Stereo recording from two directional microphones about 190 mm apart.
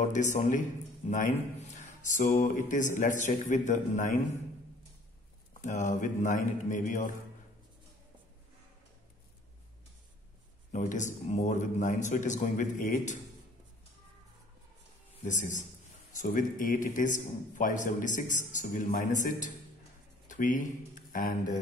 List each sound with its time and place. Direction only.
0.1 s a man's voice: 40° left (ahead or behind)
5.6 s a man's voice: 40° left (ahead or behind)
10.7 s a man's voice: 40° left (ahead or behind)
15.2 s a man's voice: 40° left (ahead or behind)